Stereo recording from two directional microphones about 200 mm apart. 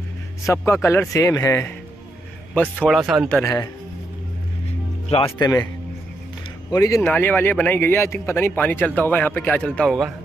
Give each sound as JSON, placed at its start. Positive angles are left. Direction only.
{"t": 0.5, "sound": "speech", "side_deg": 15}
{"t": 5.1, "sound": "speech", "side_deg": 30}
{"t": 6.7, "sound": "speech", "side_deg": 15}